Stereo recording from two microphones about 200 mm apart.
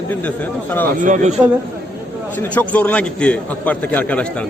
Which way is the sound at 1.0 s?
35° right (ahead or behind).